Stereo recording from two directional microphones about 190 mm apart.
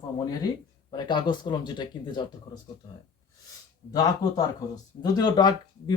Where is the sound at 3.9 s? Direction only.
20° left (ahead or behind).